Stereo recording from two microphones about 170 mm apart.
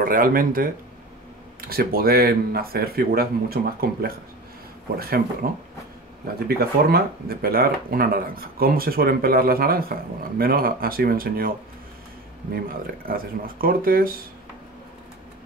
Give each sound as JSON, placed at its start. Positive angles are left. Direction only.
{"t": 0.0, "sound": "speech", "side_deg": -55}
{"t": 13.0, "sound": "speech", "side_deg": -60}